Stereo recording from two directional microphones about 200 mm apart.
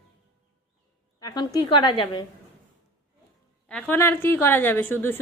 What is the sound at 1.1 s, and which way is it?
A woman's voice, 20° left (ahead or behind).